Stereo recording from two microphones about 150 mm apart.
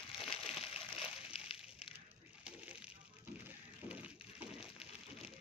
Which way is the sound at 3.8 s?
10° right (ahead or behind).